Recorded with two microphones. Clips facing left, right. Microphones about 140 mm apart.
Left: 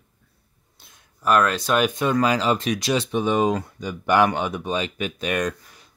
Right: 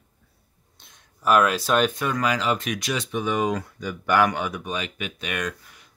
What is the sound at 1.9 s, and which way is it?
Speech, 25° left (ahead or behind).